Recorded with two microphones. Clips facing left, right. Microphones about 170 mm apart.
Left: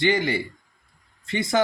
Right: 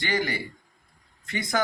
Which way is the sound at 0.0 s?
25° left (ahead or behind).